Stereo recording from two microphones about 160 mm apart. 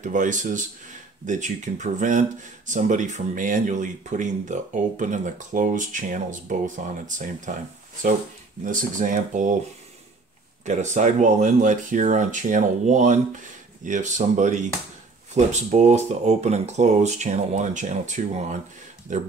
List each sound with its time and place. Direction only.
0.0 s speech: 50° right (ahead or behind)
8.6 s speech: 55° right (ahead or behind)
10.6 s speech: 50° right (ahead or behind)